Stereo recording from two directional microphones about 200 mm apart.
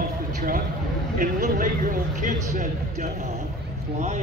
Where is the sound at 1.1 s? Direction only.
45° right (ahead or behind).